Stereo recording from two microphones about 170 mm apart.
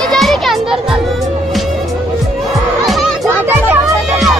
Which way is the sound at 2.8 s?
Centre (ahead or behind).